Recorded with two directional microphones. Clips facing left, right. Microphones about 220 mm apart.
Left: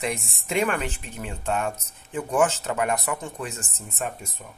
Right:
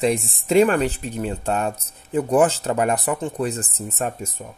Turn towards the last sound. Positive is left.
turn(degrees=-40)  # may be behind; listen again after turning